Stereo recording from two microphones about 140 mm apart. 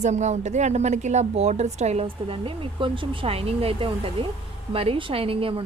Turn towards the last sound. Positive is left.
turn(degrees=-40)  # may be behind; listen again after turning